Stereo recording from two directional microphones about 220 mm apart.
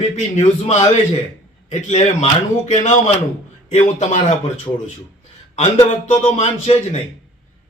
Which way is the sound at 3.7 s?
35° left (ahead or behind).